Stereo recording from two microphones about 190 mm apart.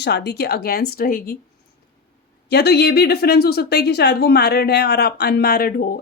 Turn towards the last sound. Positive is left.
turn(degrees=50)  # may be behind; listen again after turning